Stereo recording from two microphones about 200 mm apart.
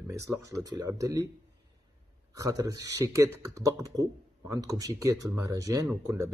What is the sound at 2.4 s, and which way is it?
Speech, 15° right (ahead or behind).